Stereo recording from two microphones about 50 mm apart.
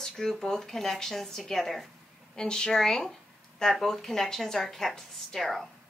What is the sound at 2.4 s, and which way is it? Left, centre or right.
A woman's voice, centre.